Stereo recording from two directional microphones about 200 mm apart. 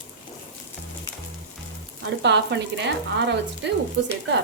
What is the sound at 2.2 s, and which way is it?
Speech, 60° right (ahead or behind).